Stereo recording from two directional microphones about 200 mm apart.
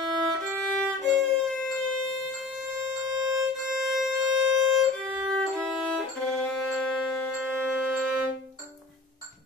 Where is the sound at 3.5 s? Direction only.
Centre (ahead or behind).